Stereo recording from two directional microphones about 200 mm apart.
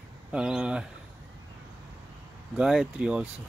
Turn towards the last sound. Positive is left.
turn(degrees=-5)  # may be behind; listen again after turning